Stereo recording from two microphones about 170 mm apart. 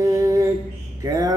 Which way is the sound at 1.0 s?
20° right (ahead or behind).